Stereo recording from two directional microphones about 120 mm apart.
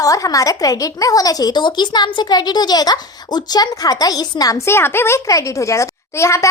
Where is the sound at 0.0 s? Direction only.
30° left (ahead or behind).